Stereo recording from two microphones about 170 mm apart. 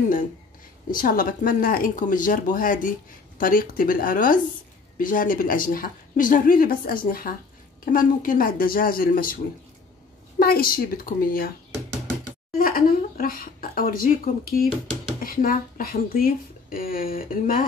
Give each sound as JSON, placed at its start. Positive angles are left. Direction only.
{"t": 0.9, "sound": "a woman's voice", "side_deg": 55}
{"t": 10.4, "sound": "speech", "side_deg": 60}
{"t": 12.5, "sound": "speech", "side_deg": 55}